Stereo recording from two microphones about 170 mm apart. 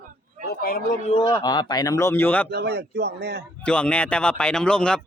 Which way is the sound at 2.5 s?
70° right (ahead or behind).